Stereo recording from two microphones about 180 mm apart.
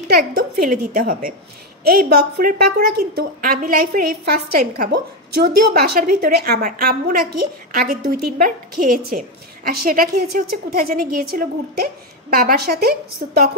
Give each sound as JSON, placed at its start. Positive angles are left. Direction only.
{"t": 0.1, "sound": "a woman's voice", "side_deg": -55}
{"t": 5.4, "sound": "a woman's voice", "side_deg": -55}